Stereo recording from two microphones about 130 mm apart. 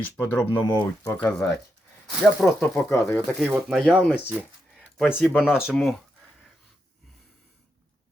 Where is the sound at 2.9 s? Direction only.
25° left (ahead or behind).